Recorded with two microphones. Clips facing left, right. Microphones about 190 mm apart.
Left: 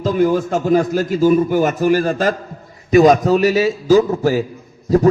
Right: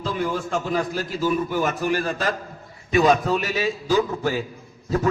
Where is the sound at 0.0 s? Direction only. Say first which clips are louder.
Left 10 dB; 40° left (ahead or behind).